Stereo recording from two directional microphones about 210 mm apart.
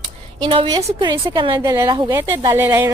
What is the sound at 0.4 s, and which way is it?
A woman's voice, 25° right (ahead or behind).